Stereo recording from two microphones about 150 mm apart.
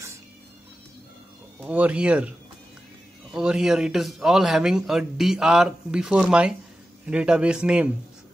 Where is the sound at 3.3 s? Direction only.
5° right (ahead or behind).